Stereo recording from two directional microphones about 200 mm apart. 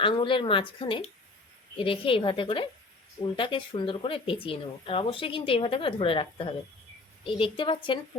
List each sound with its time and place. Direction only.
0.0 s speech: 25° left (ahead or behind)